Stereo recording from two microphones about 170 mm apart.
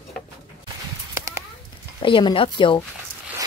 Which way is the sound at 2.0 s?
30° left (ahead or behind).